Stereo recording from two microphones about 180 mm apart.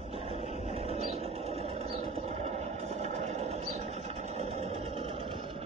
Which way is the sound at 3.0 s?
40° right (ahead or behind).